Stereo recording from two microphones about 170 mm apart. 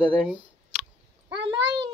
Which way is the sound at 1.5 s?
30° right (ahead or behind).